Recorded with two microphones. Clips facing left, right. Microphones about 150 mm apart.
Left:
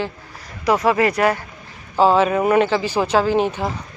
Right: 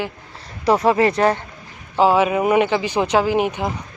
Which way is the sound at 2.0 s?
10° right (ahead or behind).